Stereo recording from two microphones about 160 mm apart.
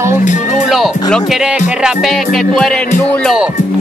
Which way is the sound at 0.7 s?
Centre (ahead or behind).